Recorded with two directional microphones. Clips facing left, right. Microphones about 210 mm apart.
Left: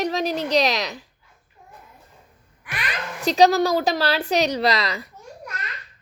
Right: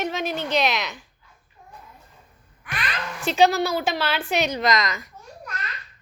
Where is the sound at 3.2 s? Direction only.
40° left (ahead or behind).